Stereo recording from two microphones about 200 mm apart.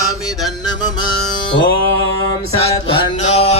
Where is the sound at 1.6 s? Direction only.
60° left (ahead or behind).